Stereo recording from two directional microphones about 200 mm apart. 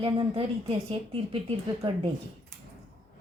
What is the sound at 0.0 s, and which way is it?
A woman's voice, 25° right (ahead or behind).